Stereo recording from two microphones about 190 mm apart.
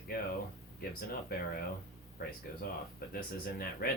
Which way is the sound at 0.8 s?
50° left (ahead or behind).